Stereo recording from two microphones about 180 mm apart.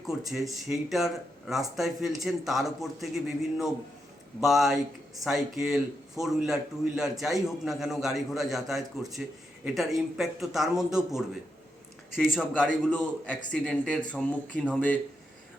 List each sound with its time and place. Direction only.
0.5 s a man's voice: centre (ahead or behind)